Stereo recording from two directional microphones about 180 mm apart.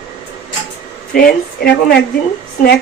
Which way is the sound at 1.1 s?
55° left (ahead or behind).